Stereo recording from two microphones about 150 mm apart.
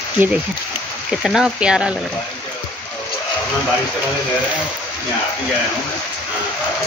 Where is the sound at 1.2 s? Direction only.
5° right (ahead or behind).